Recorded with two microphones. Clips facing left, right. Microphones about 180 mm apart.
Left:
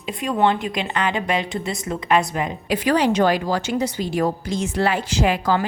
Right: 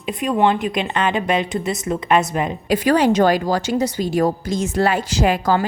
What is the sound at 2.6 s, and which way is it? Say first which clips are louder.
A woman's voice: right 3 dB; 40° right (ahead or behind).